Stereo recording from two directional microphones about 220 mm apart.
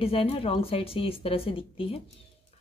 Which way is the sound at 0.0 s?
25° left (ahead or behind).